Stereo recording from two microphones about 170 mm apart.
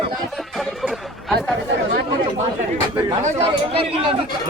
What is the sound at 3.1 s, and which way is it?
Speech, 35° right (ahead or behind).